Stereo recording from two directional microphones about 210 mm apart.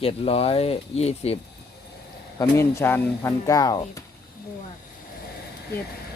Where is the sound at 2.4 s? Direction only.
15° left (ahead or behind).